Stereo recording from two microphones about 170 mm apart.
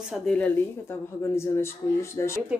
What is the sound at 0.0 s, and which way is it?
Speech, centre (ahead or behind).